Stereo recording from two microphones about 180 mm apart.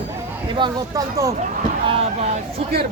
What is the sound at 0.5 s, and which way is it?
Speech, 25° right (ahead or behind).